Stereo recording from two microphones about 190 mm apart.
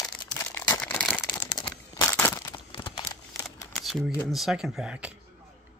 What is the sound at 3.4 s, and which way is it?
Camera, centre (ahead or behind).